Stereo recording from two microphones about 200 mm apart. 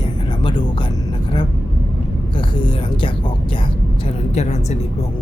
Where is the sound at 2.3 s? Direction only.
25° left (ahead or behind).